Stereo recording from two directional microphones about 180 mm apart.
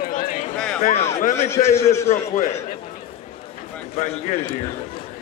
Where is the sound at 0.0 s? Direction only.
50° left (ahead or behind).